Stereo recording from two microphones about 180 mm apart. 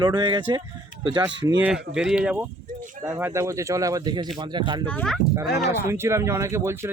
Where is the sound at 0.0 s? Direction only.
25° right (ahead or behind).